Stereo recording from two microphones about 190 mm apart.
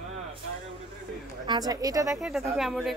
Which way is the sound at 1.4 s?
20° right (ahead or behind).